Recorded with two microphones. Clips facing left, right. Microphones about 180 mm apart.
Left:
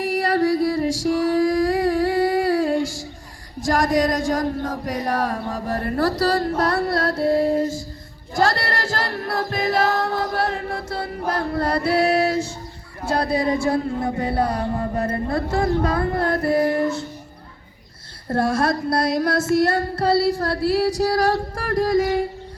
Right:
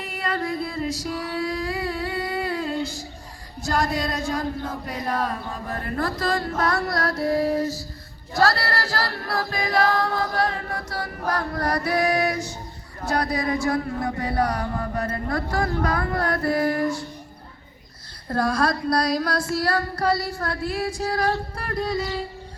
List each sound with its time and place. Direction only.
0.6 s music: 85° left
1.2 s humming: 45° left (ahead or behind)
3.7 s chant: 45° left (ahead or behind); by 7.7 s 25° left (ahead or behind)
8.4 s choir: 20° left (ahead or behind)
18.3 s chant: 25° left (ahead or behind); by 22.3 s 55° left (ahead or behind)